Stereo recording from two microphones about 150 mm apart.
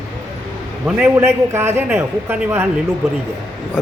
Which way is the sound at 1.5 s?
15° right (ahead or behind).